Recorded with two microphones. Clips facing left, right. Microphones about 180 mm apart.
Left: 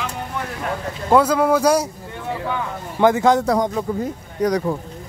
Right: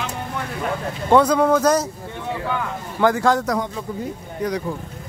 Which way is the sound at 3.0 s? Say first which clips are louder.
Left 3 dB; 20° left (ahead or behind).